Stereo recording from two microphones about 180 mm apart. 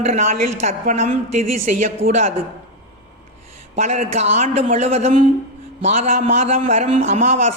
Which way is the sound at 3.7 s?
40° right (ahead or behind).